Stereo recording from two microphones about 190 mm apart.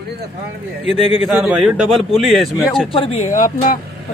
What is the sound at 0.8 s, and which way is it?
Speech, 30° left (ahead or behind).